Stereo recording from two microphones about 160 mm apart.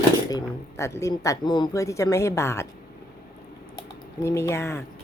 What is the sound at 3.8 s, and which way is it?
Speech, 20° left (ahead or behind).